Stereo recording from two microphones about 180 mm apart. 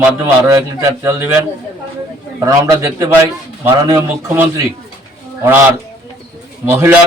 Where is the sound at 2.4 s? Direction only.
15° right (ahead or behind).